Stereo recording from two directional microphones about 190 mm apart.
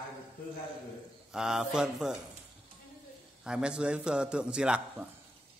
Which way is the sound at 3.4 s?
5° right (ahead or behind).